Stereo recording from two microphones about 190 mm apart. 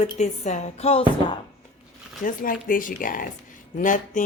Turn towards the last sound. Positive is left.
turn(degrees=45)  # may be behind; listen again after turning